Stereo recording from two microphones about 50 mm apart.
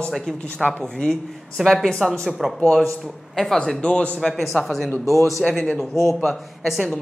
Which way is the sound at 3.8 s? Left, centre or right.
Centre.